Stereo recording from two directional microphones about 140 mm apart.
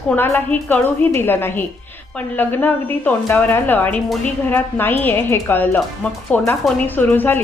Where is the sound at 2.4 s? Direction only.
10° left (ahead or behind).